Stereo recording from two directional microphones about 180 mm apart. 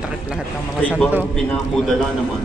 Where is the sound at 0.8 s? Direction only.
10° right (ahead or behind).